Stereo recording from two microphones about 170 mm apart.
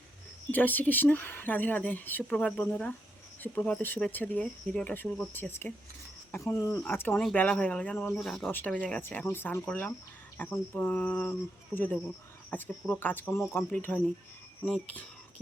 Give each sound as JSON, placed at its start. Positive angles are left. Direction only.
{"t": 0.5, "sound": "speech", "side_deg": 10}
{"t": 6.8, "sound": "speech", "side_deg": 10}